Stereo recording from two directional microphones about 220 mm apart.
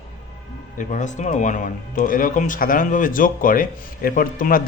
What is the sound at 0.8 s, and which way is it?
Speech, 35° left (ahead or behind).